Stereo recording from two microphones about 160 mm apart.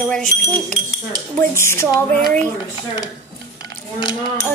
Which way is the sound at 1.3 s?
15° left (ahead or behind).